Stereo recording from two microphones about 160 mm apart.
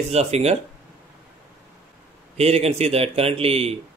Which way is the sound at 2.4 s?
40° right (ahead or behind).